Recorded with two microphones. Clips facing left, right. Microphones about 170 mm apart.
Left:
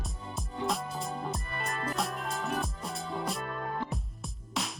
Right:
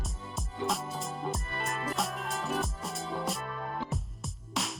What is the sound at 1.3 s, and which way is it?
Music, centre (ahead or behind).